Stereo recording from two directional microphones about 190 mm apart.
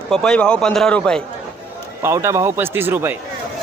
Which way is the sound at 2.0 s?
15° right (ahead or behind).